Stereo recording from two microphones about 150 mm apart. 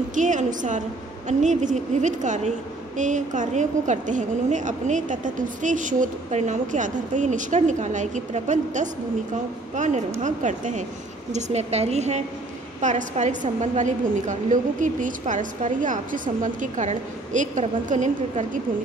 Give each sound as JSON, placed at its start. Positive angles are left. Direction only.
{"t": 0.1, "sound": "a woman's voice", "side_deg": -55}